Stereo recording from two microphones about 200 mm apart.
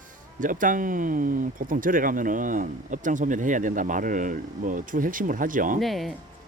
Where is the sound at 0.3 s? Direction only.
40° right (ahead or behind).